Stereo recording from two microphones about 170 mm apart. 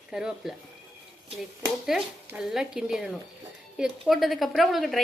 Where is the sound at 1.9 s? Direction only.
Centre (ahead or behind).